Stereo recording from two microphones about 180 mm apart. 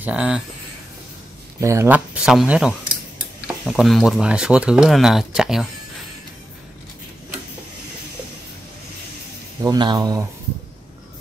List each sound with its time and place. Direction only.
0.0 s speech: 5° right (ahead or behind)
1.6 s speech: 15° right (ahead or behind)
9.6 s speech: 25° right (ahead or behind)